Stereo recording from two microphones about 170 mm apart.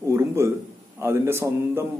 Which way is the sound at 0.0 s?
15° right (ahead or behind).